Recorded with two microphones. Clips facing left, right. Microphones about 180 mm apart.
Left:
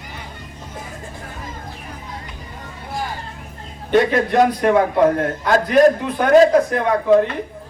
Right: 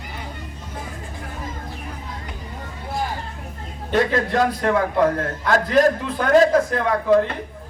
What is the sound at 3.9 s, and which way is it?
A man's voice, 20° left (ahead or behind).